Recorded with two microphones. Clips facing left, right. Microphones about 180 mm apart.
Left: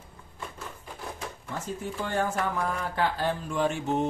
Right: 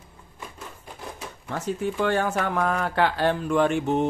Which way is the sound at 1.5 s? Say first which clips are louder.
Right 8 dB; 75° right (ahead or behind).